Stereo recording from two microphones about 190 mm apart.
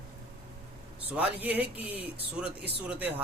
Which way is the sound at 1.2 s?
10° right (ahead or behind).